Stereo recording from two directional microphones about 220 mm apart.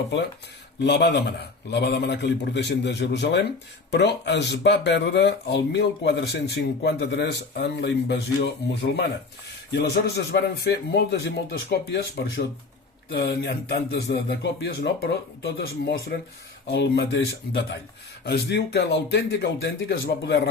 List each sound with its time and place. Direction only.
0.8 s speech: 50° left (ahead or behind)
18.3 s speech: 50° left (ahead or behind)